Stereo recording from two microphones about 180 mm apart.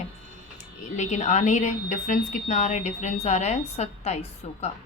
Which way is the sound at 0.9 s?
40° left (ahead or behind).